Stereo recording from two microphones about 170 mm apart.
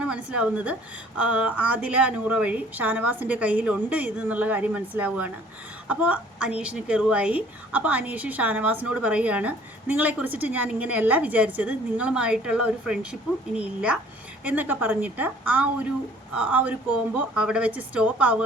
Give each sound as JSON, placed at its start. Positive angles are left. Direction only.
{"t": 0.0, "sound": "a woman's voice", "side_deg": -5}